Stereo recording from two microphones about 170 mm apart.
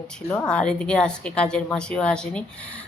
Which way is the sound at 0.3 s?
10° left (ahead or behind).